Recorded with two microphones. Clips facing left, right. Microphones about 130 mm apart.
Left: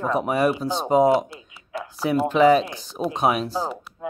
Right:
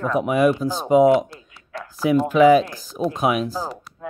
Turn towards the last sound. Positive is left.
turn(degrees=0)  # may be behind; listen again after turning